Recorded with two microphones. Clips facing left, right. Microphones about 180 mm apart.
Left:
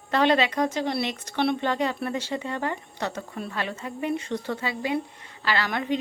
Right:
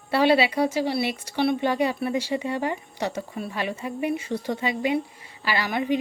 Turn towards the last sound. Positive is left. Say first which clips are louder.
# right 2 dB
turn(degrees=-10)  # may be behind; listen again after turning